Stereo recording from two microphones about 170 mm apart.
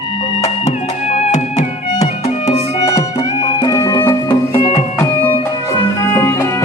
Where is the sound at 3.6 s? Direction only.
20° left (ahead or behind).